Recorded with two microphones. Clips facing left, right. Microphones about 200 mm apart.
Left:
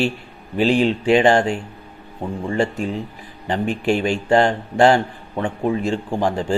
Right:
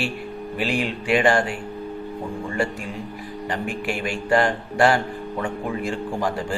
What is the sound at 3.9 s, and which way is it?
A man's voice, 25° left (ahead or behind).